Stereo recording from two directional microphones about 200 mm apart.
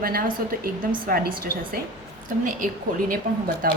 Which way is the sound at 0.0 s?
45° right (ahead or behind).